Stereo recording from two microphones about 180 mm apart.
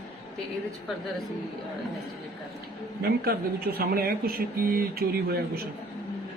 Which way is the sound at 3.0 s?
60° right (ahead or behind).